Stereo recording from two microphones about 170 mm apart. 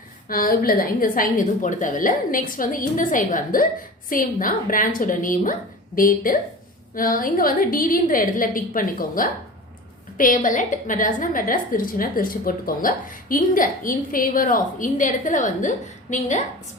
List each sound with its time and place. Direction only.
0.3 s a woman's voice: 55° left (ahead or behind)